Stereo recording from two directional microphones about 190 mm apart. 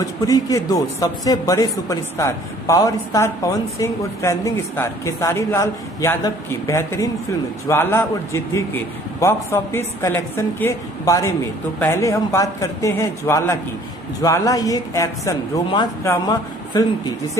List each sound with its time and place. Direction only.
0.0 s speech: 20° left (ahead or behind)